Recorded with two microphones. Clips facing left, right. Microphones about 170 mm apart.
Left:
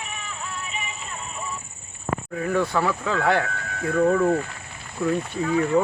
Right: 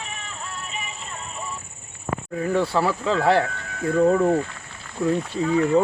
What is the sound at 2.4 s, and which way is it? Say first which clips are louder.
Speech: right 1 dB; 30° right (ahead or behind).